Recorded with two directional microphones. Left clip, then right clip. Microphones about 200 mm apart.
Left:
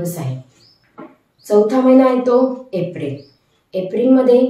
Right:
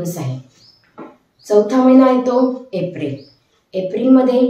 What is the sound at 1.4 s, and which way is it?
Speech, 15° left (ahead or behind).